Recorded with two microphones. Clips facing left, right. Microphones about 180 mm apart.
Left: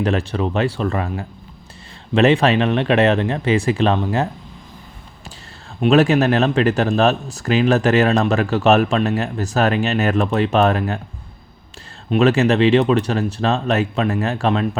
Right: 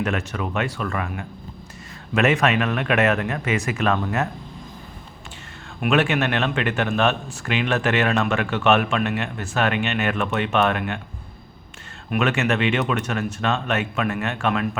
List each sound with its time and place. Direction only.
0.0 s speech: 30° left (ahead or behind)
5.8 s speech: 35° left (ahead or behind)
12.1 s speech: 35° left (ahead or behind)